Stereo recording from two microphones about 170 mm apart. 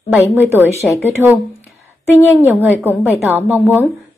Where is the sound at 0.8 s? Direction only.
Centre (ahead or behind).